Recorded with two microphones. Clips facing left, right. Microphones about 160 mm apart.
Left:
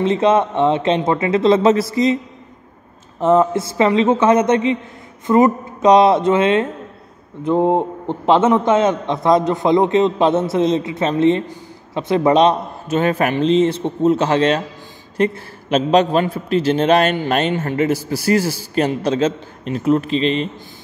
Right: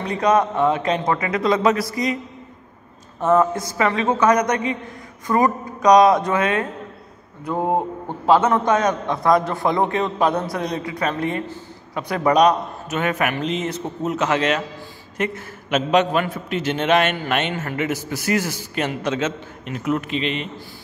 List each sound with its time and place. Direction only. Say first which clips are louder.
0.0 s a man's voice: left 4 dB; 25° left (ahead or behind)
3.2 s a man's voice: left 3 dB; 25° left (ahead or behind)